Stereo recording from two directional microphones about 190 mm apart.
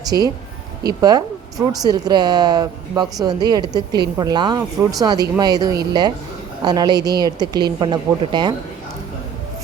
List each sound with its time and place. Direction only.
0.1 s speech: 15° right (ahead or behind)